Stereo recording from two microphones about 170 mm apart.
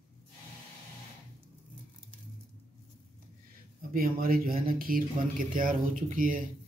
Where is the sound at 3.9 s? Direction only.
60° right (ahead or behind).